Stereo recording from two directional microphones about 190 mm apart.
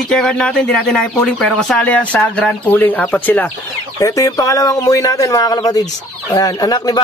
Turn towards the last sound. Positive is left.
turn(degrees=20)  # may be behind; listen again after turning